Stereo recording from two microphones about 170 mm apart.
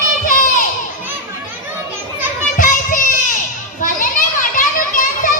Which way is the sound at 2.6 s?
50° left (ahead or behind).